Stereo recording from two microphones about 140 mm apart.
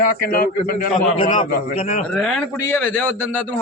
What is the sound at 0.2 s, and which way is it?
Speech, 90° left.